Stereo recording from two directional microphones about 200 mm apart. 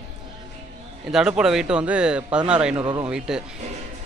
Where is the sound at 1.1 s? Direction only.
5° right (ahead or behind).